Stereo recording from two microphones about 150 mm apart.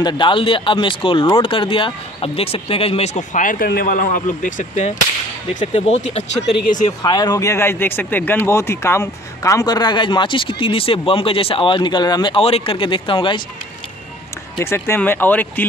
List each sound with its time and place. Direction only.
0.0 s speech: 35° left (ahead or behind)
3.2 s speech: 60° left (ahead or behind)
5.6 s speech: 45° left (ahead or behind)
6.4 s speech: 90° left
7.0 s speech: 25° left (ahead or behind)
14.6 s speech: 15° left (ahead or behind)